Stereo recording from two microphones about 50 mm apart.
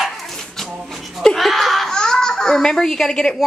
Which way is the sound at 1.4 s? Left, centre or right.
Centre.